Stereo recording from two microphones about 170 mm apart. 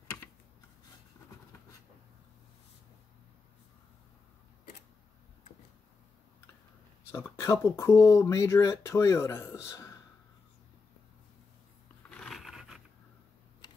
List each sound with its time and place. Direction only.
7.1 s speech: 15° left (ahead or behind)
12.1 s scrape: centre (ahead or behind)